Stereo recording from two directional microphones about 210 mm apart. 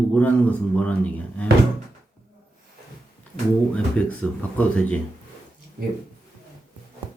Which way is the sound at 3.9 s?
5° left (ahead or behind).